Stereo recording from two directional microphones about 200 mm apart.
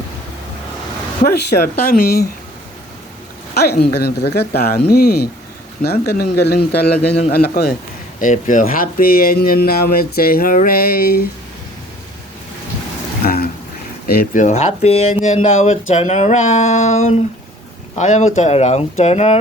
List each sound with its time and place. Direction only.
1.2 s speech: 50° left (ahead or behind)
3.5 s speech: 55° left (ahead or behind)
8.2 s speech: 40° left (ahead or behind)
13.2 s a sound: 50° left (ahead or behind)
14.1 s speech: 45° left (ahead or behind)